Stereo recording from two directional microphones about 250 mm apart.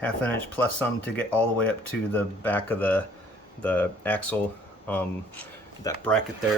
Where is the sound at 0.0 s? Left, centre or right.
Centre.